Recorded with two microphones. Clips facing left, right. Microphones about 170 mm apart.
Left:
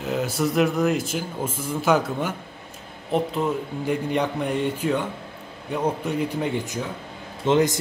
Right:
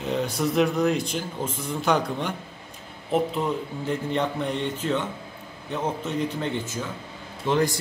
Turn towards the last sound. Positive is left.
turn(degrees=20)  # may be behind; listen again after turning